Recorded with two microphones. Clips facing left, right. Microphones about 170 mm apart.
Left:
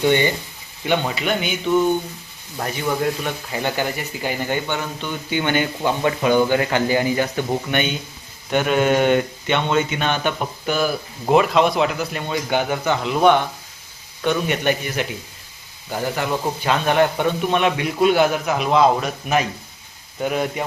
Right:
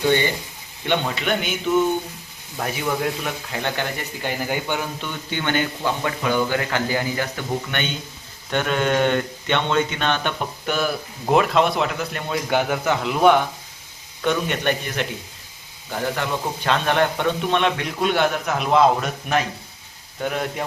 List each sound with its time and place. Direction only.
0.9 s speech: 5° left (ahead or behind)
4.4 s speech: 10° right (ahead or behind)
5.0 s a man's voice: 15° left (ahead or behind)